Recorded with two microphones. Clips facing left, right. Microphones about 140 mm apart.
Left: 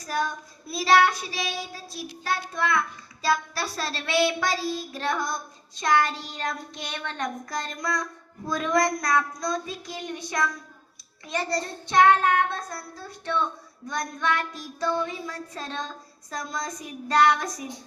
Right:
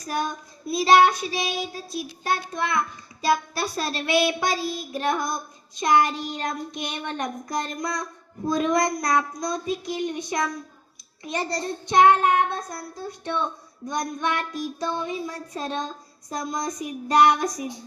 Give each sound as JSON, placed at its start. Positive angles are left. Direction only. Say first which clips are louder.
{"t": 0.7, "sound": "child singing", "louder": "right 3 dB", "side_deg": -20}